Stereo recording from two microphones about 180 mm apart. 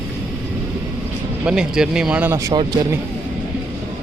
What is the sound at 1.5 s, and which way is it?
Speech, 5° right (ahead or behind).